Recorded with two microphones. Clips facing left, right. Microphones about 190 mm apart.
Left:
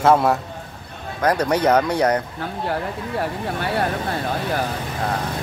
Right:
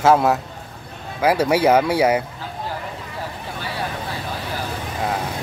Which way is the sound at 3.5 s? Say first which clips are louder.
Left 6 dB; 60° left (ahead or behind).